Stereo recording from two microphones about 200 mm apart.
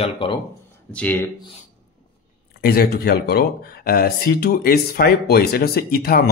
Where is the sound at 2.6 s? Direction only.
50° left (ahead or behind).